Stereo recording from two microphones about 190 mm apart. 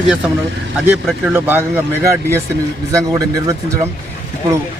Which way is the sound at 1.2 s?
10° right (ahead or behind).